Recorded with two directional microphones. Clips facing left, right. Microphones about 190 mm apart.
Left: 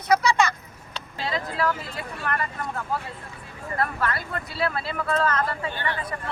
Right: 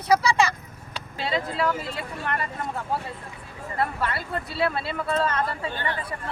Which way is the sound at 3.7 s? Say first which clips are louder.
Even; 25° right (ahead or behind).